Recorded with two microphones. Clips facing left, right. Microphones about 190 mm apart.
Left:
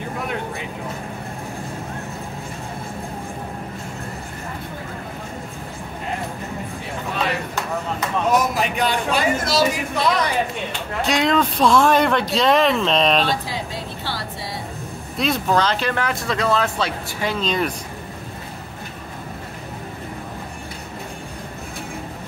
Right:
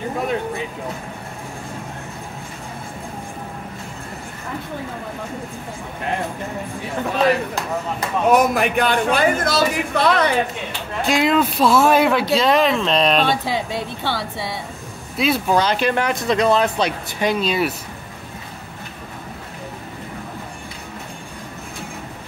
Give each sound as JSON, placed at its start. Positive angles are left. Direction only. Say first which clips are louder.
{"t": 8.3, "sound": "speech", "louder": "right 5 dB", "side_deg": -55}
{"t": 11.0, "sound": "speech", "louder": "right 2 dB", "side_deg": 0}
{"t": 14.0, "sound": "speech", "louder": "right 5 dB", "side_deg": -60}
{"t": 15.1, "sound": "speech", "louder": "right 2 dB", "side_deg": -5}